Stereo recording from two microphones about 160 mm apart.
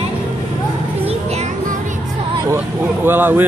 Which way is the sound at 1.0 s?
45° right (ahead or behind).